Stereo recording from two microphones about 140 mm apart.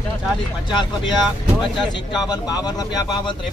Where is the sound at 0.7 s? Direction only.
35° left (ahead or behind).